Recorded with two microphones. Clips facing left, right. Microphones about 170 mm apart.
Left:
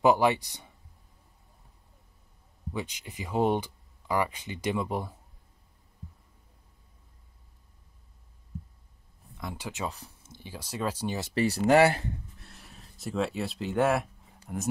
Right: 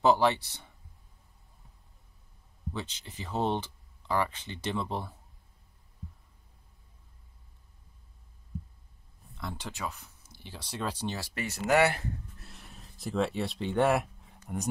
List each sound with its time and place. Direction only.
0.0 s speech: 15° left (ahead or behind)
2.7 s speech: 10° left (ahead or behind)
9.4 s speech: 15° left (ahead or behind)
9.8 s speech: 35° left (ahead or behind)
10.3 s speech: 10° left (ahead or behind)
11.1 s speech: 30° left (ahead or behind)
12.4 s a sound: centre (ahead or behind)